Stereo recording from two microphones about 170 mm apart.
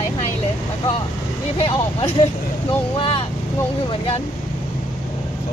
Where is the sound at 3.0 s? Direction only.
35° left (ahead or behind).